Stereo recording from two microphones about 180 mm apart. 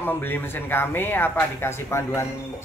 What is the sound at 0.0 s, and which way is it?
A man's voice, 10° left (ahead or behind).